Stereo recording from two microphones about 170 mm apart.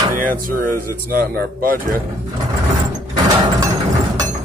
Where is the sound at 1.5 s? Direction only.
55° right (ahead or behind).